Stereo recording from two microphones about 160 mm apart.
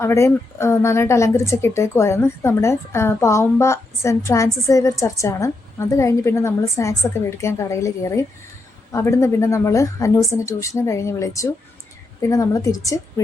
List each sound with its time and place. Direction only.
0.0 s a woman's voice: 15° left (ahead or behind)